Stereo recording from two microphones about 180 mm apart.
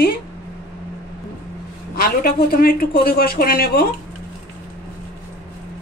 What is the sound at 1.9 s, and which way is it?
Speech, 55° left (ahead or behind).